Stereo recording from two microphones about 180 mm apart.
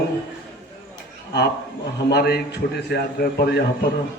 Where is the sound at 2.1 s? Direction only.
65° left (ahead or behind).